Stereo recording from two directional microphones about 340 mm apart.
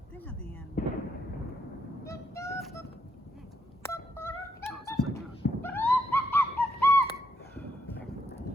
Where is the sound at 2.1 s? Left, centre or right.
Centre.